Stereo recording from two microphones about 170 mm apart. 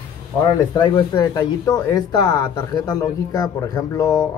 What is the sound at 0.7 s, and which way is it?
Speech, 25° left (ahead or behind).